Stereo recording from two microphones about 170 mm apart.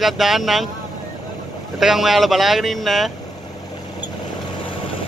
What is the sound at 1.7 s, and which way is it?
Speech, centre (ahead or behind).